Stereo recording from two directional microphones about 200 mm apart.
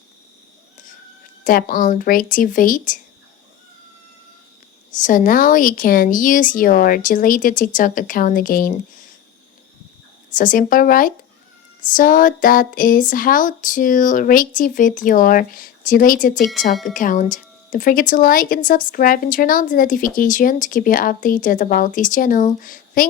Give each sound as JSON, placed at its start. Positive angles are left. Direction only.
{"t": 1.5, "sound": "speech", "side_deg": 45}
{"t": 4.9, "sound": "speech", "side_deg": 40}
{"t": 10.3, "sound": "speech", "side_deg": 40}
{"t": 16.4, "sound": "speech", "side_deg": 0}
{"t": 16.9, "sound": "speech", "side_deg": 40}